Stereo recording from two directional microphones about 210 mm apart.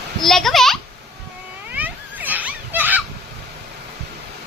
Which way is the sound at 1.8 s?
10° right (ahead or behind).